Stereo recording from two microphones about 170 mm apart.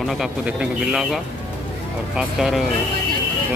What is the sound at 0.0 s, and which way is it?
Speech, centre (ahead or behind).